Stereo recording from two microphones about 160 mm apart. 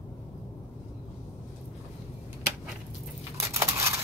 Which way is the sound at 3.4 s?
20° right (ahead or behind).